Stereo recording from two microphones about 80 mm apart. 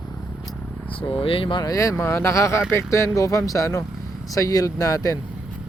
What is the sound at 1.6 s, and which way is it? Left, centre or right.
Speech, left.